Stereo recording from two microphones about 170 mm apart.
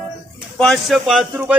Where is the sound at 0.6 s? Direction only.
Centre (ahead or behind).